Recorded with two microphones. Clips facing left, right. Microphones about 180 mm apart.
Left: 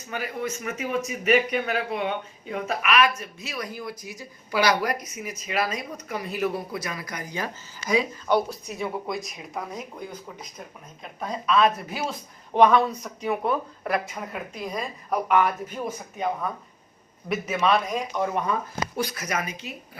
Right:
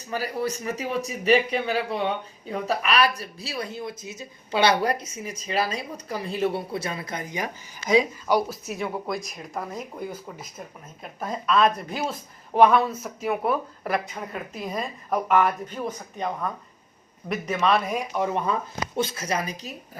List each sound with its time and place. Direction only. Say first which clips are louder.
0.1 s speech: right 3 dB; 35° right (ahead or behind); by 8.0 s 20° right (ahead or behind)
8.3 s speech: left 3 dB; centre (ahead or behind)
18.9 s a woman's voice: right 3 dB; 25° right (ahead or behind)